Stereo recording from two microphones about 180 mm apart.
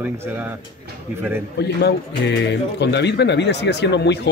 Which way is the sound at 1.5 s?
70° left (ahead or behind).